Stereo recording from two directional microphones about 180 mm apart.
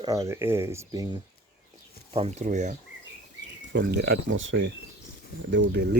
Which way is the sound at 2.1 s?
35° right (ahead or behind).